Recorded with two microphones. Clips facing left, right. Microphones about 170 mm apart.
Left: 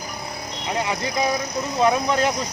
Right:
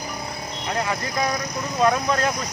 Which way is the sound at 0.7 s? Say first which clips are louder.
Left 1 dB; 20° left (ahead or behind).